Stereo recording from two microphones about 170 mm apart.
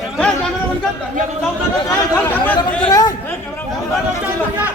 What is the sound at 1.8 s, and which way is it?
Speech, 15° left (ahead or behind).